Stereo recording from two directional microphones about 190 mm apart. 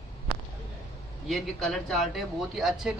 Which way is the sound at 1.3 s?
Centre (ahead or behind).